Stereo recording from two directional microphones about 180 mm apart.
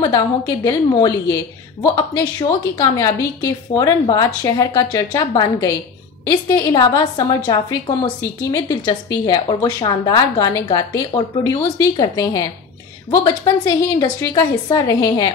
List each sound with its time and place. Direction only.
0.7 s a woman's voice: 20° left (ahead or behind)